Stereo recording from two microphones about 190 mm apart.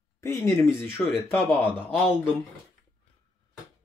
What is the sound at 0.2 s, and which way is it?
Speech, 15° left (ahead or behind).